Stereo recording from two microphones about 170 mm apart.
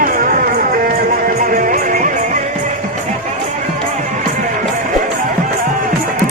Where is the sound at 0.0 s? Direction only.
55° right (ahead or behind).